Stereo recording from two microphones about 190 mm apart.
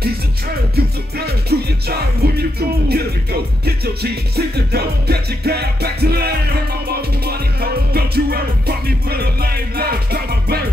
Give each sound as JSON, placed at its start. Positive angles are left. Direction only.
{"t": 0.7, "sound": "music", "side_deg": -55}